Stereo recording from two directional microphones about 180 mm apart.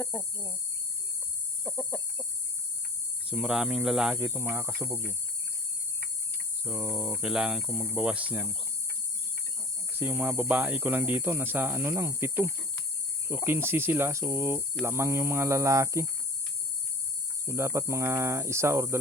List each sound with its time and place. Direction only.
0.0 s cricket: 15° left (ahead or behind)
1.6 s chicken: 15° left (ahead or behind)
3.2 s speech: 5° right (ahead or behind)
6.7 s speech: 5° right (ahead or behind)
10.0 s speech: 10° right (ahead or behind)
17.4 s speech: 15° right (ahead or behind)